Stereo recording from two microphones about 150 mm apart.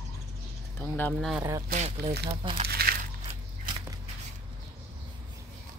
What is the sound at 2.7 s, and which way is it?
Crumpling, 90° right.